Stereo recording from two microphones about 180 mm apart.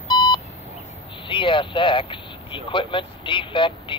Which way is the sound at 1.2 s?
30° left (ahead or behind).